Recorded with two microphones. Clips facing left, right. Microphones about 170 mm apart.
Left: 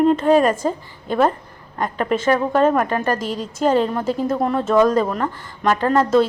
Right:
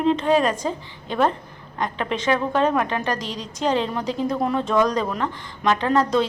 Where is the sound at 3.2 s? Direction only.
50° left (ahead or behind).